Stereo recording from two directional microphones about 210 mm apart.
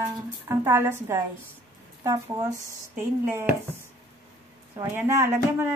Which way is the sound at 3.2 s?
10° right (ahead or behind).